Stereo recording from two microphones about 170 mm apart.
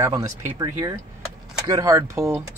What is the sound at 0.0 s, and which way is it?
Speech, 20° right (ahead or behind).